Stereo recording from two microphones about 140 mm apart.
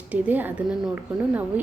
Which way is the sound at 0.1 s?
10° right (ahead or behind).